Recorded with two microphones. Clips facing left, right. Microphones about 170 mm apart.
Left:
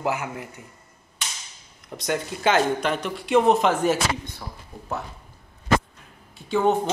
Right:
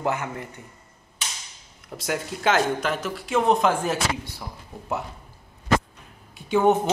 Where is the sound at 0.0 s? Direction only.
10° left (ahead or behind).